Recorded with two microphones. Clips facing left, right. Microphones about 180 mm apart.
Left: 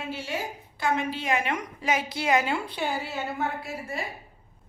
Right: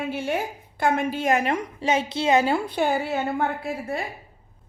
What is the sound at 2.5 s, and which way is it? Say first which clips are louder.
A woman's voice: right 6 dB; 50° right (ahead or behind).